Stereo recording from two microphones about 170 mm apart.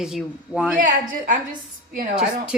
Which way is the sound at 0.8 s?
50° right (ahead or behind).